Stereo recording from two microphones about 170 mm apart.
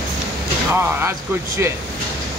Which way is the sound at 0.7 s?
15° right (ahead or behind).